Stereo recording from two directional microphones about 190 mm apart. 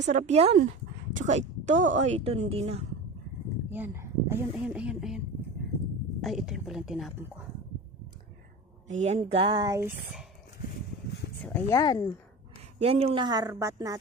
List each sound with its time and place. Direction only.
0.0 s a woman's voice: 40° right (ahead or behind)
3.7 s speech: 10° right (ahead or behind)
6.2 s a woman's voice: centre (ahead or behind)
8.9 s speech: 40° right (ahead or behind); by 9.9 s 15° right (ahead or behind)
11.4 s speech: 10° left (ahead or behind)
11.8 s speech: 20° left (ahead or behind)
12.8 s speech: 30° right (ahead or behind)